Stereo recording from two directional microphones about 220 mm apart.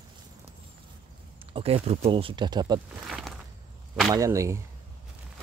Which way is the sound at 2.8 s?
Centre (ahead or behind).